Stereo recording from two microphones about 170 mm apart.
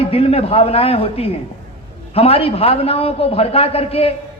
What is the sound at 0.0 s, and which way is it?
A man's voice, 35° left (ahead or behind).